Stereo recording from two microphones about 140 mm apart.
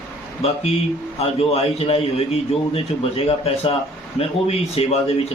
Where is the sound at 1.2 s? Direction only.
45° left (ahead or behind).